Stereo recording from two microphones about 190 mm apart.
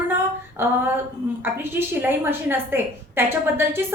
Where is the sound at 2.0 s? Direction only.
10° right (ahead or behind).